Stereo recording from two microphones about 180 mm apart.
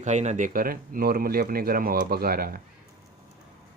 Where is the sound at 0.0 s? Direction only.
40° right (ahead or behind); by 2.6 s 55° right (ahead or behind).